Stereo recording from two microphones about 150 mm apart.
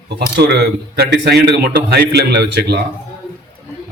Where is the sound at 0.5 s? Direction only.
90° right.